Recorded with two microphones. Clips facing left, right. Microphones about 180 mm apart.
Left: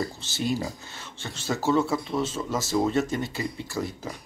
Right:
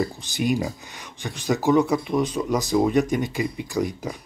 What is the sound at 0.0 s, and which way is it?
Speech, 15° right (ahead or behind).